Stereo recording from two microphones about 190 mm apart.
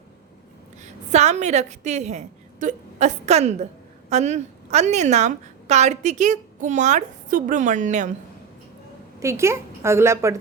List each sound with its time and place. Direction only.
0.8 s a woman's voice: 35° right (ahead or behind)
9.2 s a woman's voice: 15° right (ahead or behind)